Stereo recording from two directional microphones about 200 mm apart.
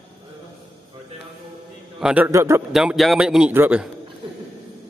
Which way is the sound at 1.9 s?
5° right (ahead or behind).